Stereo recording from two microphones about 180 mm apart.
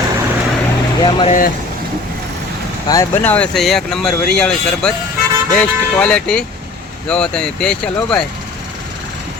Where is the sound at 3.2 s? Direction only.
10° left (ahead or behind).